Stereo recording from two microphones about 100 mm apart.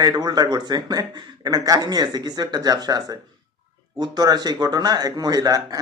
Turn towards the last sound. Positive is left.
turn(degrees=-35)  # may be behind; listen again after turning